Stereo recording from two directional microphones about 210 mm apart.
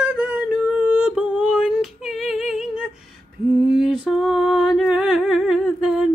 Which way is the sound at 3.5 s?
Centre (ahead or behind).